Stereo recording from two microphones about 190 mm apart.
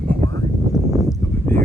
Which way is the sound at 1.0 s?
10° left (ahead or behind).